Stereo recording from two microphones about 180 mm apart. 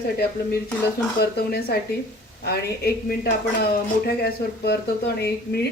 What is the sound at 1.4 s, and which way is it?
Dishes, 60° left (ahead or behind).